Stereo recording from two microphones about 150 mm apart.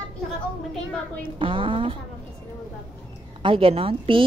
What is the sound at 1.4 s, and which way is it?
Speech, 35° right (ahead or behind).